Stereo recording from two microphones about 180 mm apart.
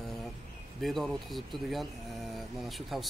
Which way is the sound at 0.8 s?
Centre (ahead or behind).